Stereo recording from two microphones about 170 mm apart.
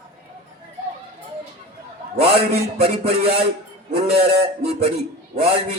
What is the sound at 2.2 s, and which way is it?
A man's voice, 40° right (ahead or behind).